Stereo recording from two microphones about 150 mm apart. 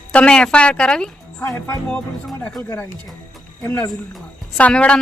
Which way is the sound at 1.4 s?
15° left (ahead or behind).